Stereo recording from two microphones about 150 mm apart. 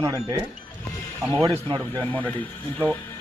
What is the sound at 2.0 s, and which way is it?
Speech, 10° left (ahead or behind).